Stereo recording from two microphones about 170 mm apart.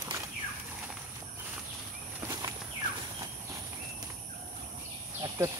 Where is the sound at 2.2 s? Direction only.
20° right (ahead or behind).